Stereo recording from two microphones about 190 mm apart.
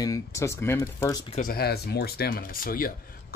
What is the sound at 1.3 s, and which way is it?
Speech, 50° left (ahead or behind).